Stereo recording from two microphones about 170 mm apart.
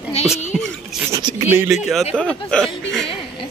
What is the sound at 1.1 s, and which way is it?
Speech, 20° right (ahead or behind).